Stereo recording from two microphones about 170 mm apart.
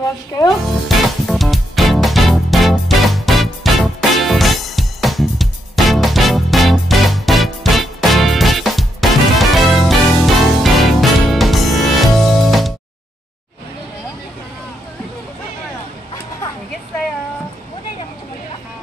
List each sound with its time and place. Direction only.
0.8 s music: centre (ahead or behind)